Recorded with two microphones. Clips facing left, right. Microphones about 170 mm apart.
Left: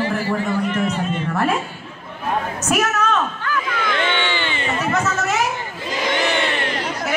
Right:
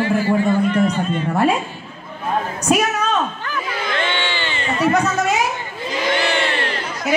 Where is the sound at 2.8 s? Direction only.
15° right (ahead or behind).